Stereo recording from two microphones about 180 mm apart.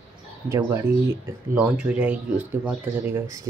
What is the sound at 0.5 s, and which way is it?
Speech, 15° right (ahead or behind).